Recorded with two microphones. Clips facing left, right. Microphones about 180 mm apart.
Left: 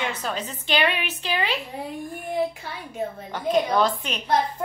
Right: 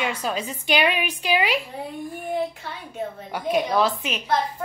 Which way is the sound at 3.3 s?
10° right (ahead or behind).